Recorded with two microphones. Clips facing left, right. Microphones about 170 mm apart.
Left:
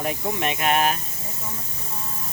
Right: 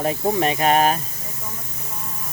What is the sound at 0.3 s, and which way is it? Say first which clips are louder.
Speech: right 5 dB; 40° right (ahead or behind).